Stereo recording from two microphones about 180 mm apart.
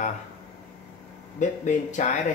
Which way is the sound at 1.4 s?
45° left (ahead or behind).